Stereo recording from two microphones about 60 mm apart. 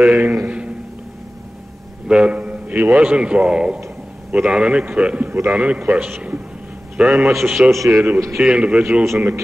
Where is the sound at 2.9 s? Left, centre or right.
Centre.